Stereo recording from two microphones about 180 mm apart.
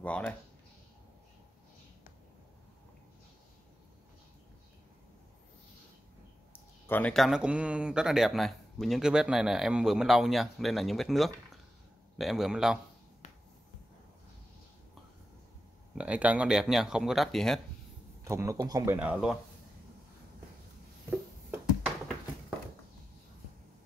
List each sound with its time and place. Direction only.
0.0 s speech: 5° left (ahead or behind)
6.9 s speech: 10° left (ahead or behind)
13.2 s finger snapping: 40° left (ahead or behind)
15.9 s speech: 5° right (ahead or behind)
18.2 s speech: 15° right (ahead or behind)